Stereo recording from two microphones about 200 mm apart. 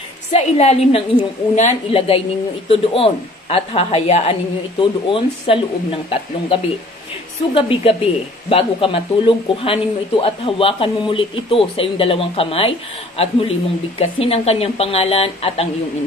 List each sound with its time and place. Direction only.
0.3 s a woman's voice: 35° left (ahead or behind)